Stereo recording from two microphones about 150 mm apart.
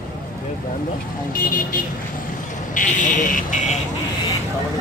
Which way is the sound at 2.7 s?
60° left (ahead or behind).